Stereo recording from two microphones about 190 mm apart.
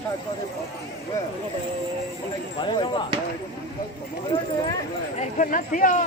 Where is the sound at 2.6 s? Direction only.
25° left (ahead or behind).